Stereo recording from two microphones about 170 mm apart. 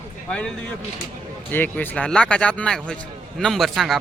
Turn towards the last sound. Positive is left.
turn(degrees=0)  # may be behind; listen again after turning